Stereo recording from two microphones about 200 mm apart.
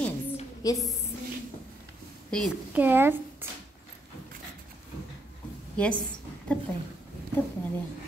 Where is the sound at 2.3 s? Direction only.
5° left (ahead or behind).